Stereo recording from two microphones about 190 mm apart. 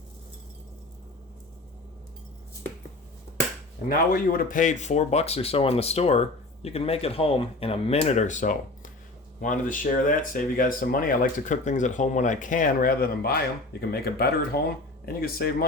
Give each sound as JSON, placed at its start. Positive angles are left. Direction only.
{"t": 3.8, "sound": "speech", "side_deg": 50}